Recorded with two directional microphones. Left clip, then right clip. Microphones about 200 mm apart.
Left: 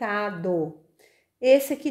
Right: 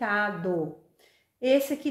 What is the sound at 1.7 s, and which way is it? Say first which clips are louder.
Speech: left 2 dB; 35° left (ahead or behind).